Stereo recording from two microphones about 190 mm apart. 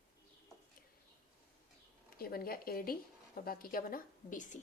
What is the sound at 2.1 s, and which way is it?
A woman's voice, 50° left (ahead or behind).